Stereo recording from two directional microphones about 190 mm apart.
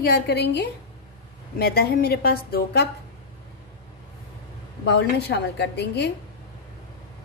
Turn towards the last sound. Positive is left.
turn(degrees=60)  # may be behind; listen again after turning